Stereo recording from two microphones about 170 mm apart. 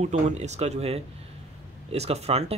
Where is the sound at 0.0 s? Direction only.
40° right (ahead or behind).